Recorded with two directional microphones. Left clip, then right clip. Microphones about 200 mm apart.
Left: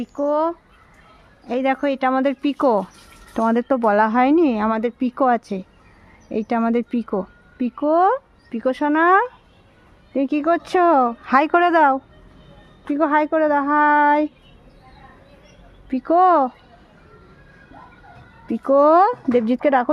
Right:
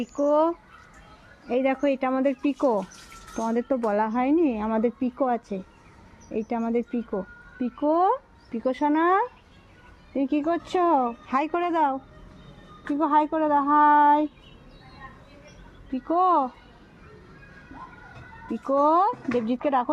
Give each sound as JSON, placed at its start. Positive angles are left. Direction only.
{"t": 0.0, "sound": "speech", "side_deg": 30}
{"t": 15.9, "sound": "speech", "side_deg": 45}
{"t": 18.6, "sound": "speech", "side_deg": 45}